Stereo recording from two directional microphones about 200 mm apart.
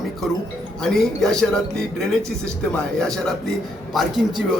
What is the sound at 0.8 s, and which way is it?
A man's voice, centre (ahead or behind).